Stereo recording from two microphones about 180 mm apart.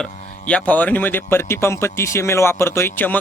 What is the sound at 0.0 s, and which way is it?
A man's voice, 5° left (ahead or behind).